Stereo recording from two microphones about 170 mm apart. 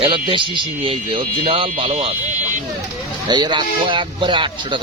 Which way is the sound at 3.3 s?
25° right (ahead or behind).